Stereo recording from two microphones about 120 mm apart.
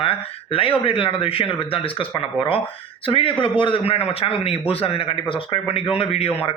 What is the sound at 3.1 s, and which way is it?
Speech, 45° left (ahead or behind).